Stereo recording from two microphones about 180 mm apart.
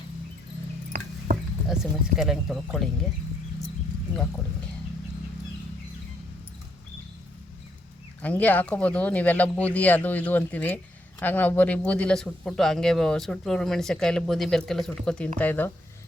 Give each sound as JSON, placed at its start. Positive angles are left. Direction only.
{"t": 1.3, "sound": "a sound", "side_deg": -50}
{"t": 1.6, "sound": "speech", "side_deg": -5}
{"t": 8.2, "sound": "speech", "side_deg": 10}